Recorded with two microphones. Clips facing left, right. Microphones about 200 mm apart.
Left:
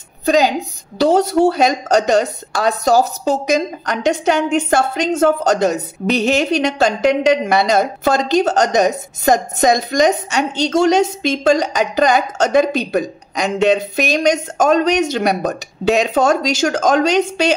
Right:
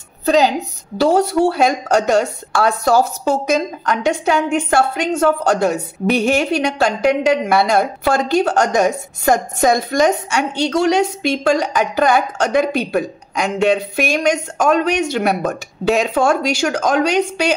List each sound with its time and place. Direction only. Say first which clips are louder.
0.2 s a woman's voice: even; 15° left (ahead or behind)
3.3 s a woman's voice: left 1 dB; 15° left (ahead or behind)